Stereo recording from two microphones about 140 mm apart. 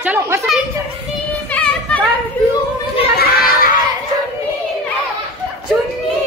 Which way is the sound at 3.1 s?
90° left.